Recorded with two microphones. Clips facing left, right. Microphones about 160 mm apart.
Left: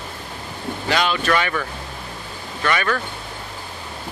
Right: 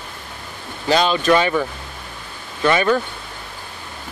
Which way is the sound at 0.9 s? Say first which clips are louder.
Right 5 dB; 25° right (ahead or behind).